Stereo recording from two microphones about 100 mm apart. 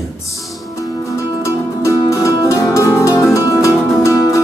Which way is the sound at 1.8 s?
30° left (ahead or behind).